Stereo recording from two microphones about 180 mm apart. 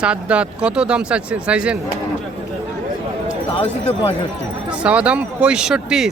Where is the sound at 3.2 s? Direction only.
35° left (ahead or behind).